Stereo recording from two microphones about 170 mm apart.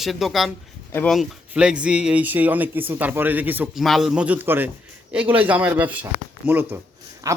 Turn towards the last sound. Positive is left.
turn(degrees=-15)  # may be behind; listen again after turning